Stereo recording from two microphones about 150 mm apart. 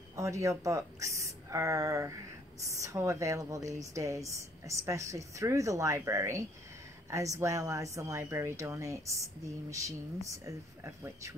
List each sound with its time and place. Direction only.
0.1 s a woman's voice: 20° right (ahead or behind)